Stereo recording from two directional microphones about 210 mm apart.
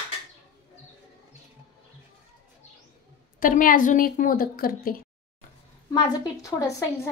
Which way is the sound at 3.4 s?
40° left (ahead or behind).